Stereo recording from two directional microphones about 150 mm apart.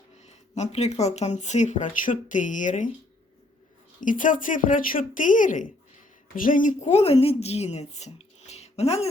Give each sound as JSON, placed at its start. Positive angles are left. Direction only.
{"t": 0.3, "sound": "speech", "side_deg": 50}
{"t": 4.0, "sound": "speech", "side_deg": 60}
{"t": 6.8, "sound": "speech", "side_deg": 45}